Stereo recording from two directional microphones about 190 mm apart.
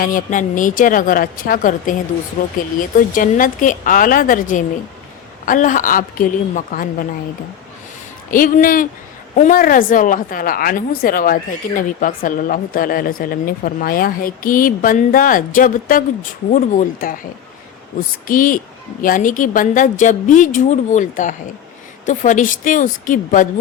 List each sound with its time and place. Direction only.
0.0 s a woman's voice: 45° left (ahead or behind)
8.3 s a woman's voice: 45° left (ahead or behind)
18.3 s a woman's voice: 45° left (ahead or behind)